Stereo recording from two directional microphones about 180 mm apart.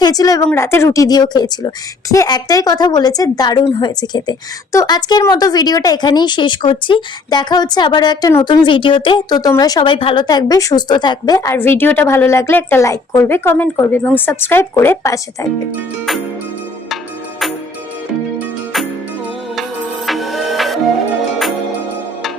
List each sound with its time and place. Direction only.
0.0 s a woman's voice: 20° left (ahead or behind)
18.3 s music: centre (ahead or behind)
20.1 s music: centre (ahead or behind)